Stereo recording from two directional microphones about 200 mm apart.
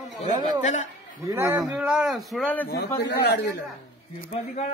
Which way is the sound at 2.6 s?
55° left (ahead or behind).